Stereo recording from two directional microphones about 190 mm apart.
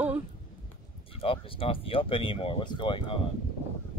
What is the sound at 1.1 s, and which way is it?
Speech, 30° left (ahead or behind).